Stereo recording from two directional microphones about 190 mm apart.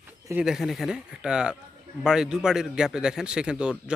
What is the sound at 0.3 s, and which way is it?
A man's voice, 5° right (ahead or behind).